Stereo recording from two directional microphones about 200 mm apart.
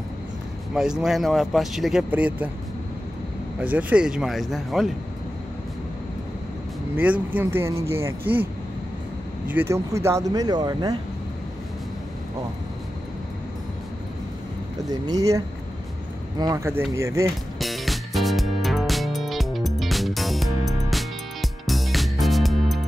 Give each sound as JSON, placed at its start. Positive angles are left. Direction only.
{"t": 0.7, "sound": "speech", "side_deg": -5}
{"t": 3.5, "sound": "speech", "side_deg": -10}
{"t": 7.0, "sound": "speech", "side_deg": -10}
{"t": 9.5, "sound": "speech", "side_deg": -10}
{"t": 14.9, "sound": "speech", "side_deg": -20}
{"t": 17.6, "sound": "music", "side_deg": 0}